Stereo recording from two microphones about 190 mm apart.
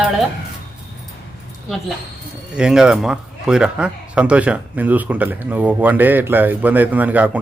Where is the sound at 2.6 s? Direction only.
5° right (ahead or behind).